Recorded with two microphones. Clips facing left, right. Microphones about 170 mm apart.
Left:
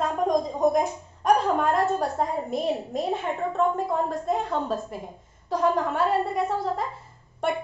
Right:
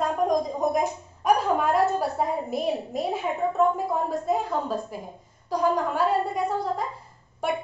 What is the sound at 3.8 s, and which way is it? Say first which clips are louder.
A woman's voice: even; 5° right (ahead or behind).